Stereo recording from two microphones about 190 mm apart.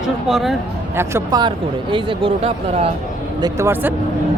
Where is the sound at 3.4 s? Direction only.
15° right (ahead or behind).